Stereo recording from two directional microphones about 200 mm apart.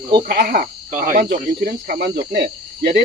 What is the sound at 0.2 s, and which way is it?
Speech, 50° right (ahead or behind).